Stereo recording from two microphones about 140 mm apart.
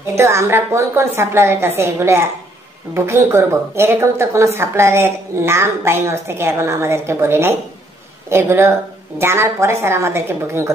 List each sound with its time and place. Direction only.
0.1 s a woman's voice: 20° right (ahead or behind)